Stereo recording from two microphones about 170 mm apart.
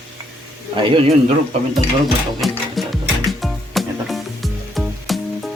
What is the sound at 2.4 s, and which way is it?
Music, centre (ahead or behind).